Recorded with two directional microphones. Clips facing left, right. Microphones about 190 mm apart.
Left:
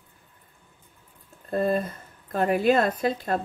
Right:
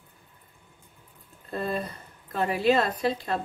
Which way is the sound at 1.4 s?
50° left (ahead or behind).